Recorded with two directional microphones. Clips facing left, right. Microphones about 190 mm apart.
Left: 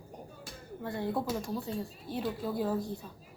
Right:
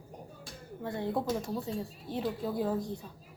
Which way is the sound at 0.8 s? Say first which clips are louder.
Right 1 dB; 20° right (ahead or behind).